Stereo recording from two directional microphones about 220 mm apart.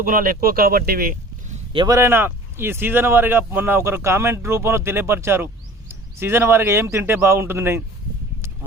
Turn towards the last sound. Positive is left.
turn(degrees=-10)  # may be behind; listen again after turning